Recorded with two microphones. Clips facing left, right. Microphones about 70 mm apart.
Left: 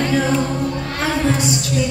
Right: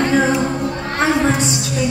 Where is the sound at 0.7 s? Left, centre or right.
Right.